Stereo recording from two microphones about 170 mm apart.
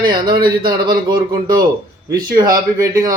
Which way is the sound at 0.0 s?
25° right (ahead or behind).